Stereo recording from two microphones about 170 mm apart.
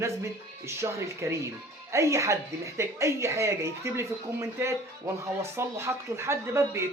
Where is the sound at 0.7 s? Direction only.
15° right (ahead or behind).